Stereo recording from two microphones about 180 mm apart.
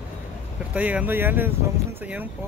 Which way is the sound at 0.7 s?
10° right (ahead or behind).